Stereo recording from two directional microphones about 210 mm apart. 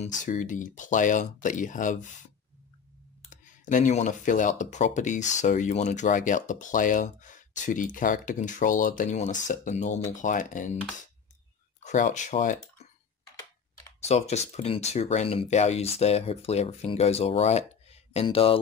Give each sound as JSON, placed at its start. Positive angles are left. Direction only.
{"t": 0.0, "sound": "speech", "side_deg": 35}
{"t": 3.3, "sound": "speech", "side_deg": 35}
{"t": 11.8, "sound": "speech", "side_deg": 35}
{"t": 14.0, "sound": "speech", "side_deg": 30}